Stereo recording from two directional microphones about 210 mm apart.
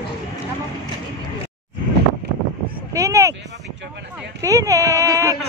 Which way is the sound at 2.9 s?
15° right (ahead or behind).